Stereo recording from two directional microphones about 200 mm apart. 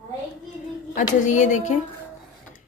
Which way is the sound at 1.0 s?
40° left (ahead or behind).